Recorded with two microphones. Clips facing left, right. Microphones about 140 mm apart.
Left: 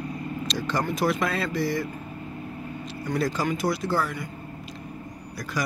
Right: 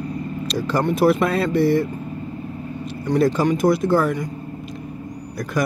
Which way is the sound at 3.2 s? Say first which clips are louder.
Right 9 dB; 50° right (ahead or behind).